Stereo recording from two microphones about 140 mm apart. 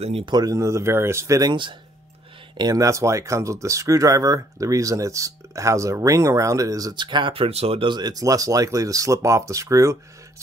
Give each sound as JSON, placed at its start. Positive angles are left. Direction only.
{"t": 0.0, "sound": "speech", "side_deg": -45}
{"t": 0.3, "sound": "speech", "side_deg": -25}
{"t": 1.5, "sound": "speech", "side_deg": -35}